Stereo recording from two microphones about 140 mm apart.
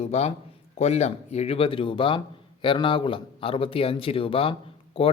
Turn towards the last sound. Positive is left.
turn(degrees=40)  # may be behind; listen again after turning